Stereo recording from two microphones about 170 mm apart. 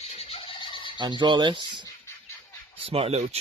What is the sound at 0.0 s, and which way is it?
Fowl, 35° left (ahead or behind).